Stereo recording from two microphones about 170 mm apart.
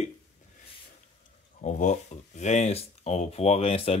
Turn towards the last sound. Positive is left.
turn(degrees=35)  # may be behind; listen again after turning